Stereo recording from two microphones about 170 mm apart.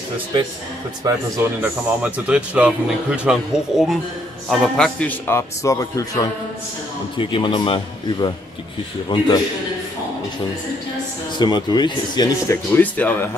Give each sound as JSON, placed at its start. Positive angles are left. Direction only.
{"t": 0.3, "sound": "a man's voice", "side_deg": -25}
{"t": 1.0, "sound": "a man's voice", "side_deg": -10}
{"t": 7.2, "sound": "speech", "side_deg": 30}
{"t": 11.3, "sound": "speech", "side_deg": 25}
{"t": 12.7, "sound": "a man's voice", "side_deg": 10}